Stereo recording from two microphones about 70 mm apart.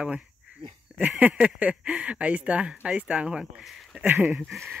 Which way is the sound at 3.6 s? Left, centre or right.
Centre.